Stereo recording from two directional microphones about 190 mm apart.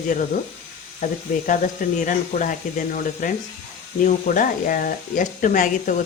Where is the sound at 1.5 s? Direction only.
45° left (ahead or behind).